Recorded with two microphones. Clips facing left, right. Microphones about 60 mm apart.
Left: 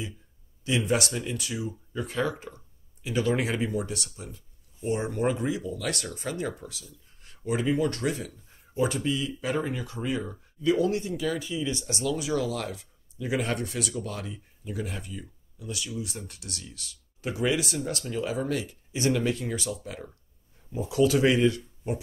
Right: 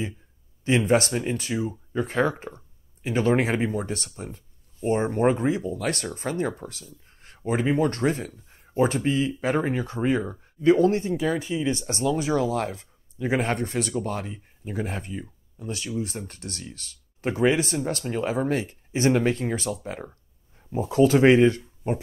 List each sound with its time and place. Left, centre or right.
0.7 s speech: right